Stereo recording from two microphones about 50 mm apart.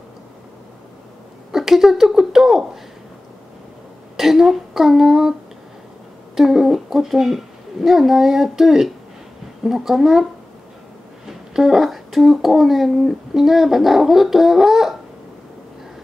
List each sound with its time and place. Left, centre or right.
1.5 s a woman's voice: centre
4.2 s a woman's voice: centre
6.3 s a woman's voice: centre
11.2 s speech: centre